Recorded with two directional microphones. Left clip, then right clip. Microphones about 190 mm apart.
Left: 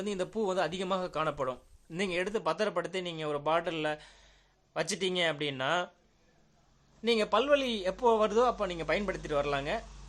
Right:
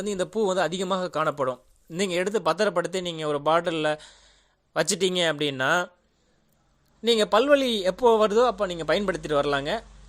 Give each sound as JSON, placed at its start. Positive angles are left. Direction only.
{"t": 0.0, "sound": "speech", "side_deg": -25}
{"t": 7.0, "sound": "speech", "side_deg": -30}